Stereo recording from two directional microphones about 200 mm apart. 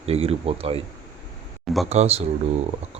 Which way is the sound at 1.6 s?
Centre (ahead or behind).